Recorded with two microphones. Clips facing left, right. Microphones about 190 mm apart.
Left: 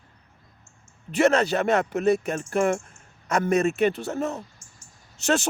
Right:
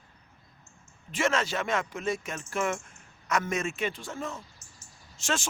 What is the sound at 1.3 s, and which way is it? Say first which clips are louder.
Speech: left 7 dB; 40° left (ahead or behind).